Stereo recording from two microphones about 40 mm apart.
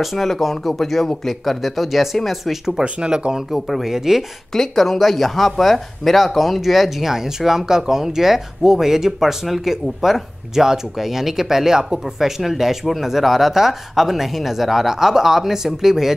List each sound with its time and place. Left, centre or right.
0.0 s speech: centre
2.8 s speech: right
3.5 s speech: centre
4.5 s speech: centre